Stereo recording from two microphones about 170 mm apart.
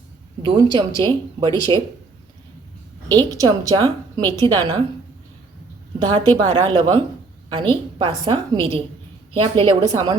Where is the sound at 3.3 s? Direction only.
20° right (ahead or behind).